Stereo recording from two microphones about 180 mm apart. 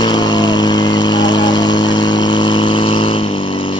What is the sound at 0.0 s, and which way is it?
Vehicle, 25° left (ahead or behind).